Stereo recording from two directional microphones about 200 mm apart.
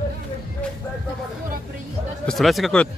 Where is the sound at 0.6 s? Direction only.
5° left (ahead or behind).